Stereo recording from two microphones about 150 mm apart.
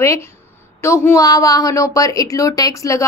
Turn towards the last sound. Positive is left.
turn(degrees=25)  # may be behind; listen again after turning